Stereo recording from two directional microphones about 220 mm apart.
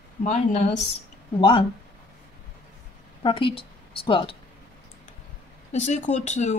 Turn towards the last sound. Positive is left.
turn(degrees=30)  # may be behind; listen again after turning